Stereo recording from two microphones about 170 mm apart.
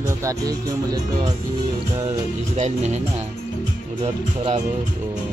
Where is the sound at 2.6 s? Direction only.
40° right (ahead or behind).